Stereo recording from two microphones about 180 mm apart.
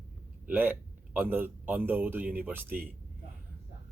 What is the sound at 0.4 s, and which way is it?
A man's voice, 10° right (ahead or behind).